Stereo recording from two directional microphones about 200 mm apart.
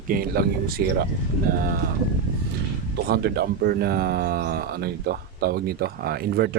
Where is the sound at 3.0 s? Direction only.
55° right (ahead or behind).